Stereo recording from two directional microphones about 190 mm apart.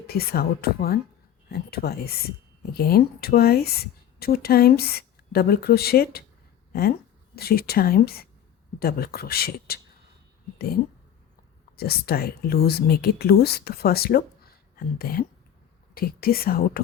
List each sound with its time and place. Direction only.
0.1 s speech: 55° left (ahead or behind)
7.3 s speech: 55° left (ahead or behind)
11.8 s speech: 55° left (ahead or behind)